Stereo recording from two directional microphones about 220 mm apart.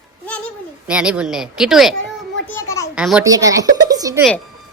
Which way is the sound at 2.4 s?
10° left (ahead or behind).